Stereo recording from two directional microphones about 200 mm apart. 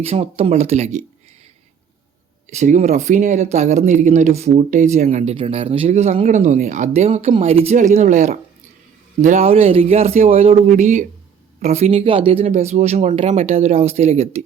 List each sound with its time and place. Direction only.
0.0 s speech: 30° right (ahead or behind)
2.5 s speech: 35° right (ahead or behind)